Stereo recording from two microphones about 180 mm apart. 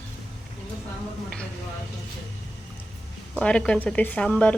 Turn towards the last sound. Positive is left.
turn(degrees=5)  # may be behind; listen again after turning